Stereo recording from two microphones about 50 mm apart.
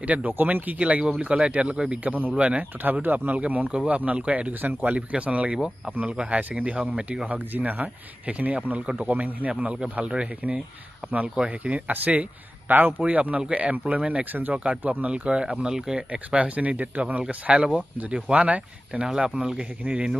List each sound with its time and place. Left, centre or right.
0.0 s speech: right
0.7 s speech: right
2.1 s speech: right
4.9 s speech: right